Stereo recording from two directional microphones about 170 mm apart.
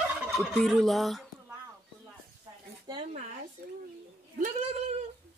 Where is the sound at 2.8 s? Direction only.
25° right (ahead or behind).